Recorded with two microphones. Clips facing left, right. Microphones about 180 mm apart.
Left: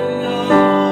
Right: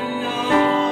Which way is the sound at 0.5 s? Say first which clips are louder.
Left 5 dB; 40° left (ahead or behind).